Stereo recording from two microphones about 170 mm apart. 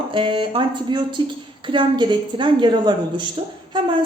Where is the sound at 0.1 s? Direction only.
30° right (ahead or behind).